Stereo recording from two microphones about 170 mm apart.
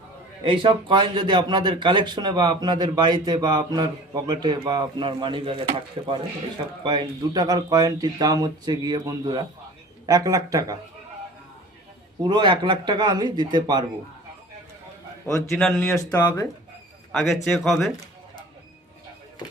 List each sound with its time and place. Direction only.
0.4 s speech: 30° right (ahead or behind)
12.2 s speech: 25° right (ahead or behind)
15.3 s speech: 15° left (ahead or behind)
17.1 s speech: centre (ahead or behind)